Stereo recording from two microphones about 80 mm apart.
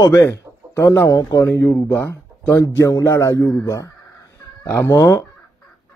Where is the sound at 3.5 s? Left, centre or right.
Left.